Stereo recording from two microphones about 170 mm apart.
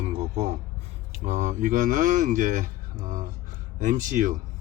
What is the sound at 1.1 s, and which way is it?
Speech, 45° right (ahead or behind).